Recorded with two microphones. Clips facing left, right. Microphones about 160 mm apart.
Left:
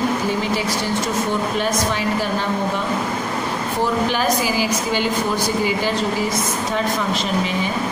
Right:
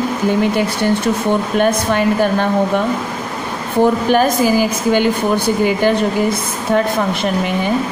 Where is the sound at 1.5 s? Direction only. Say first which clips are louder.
Right 6 dB; 55° right (ahead or behind).